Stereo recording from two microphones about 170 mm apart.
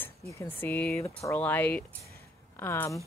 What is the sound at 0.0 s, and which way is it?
Speech, 15° left (ahead or behind).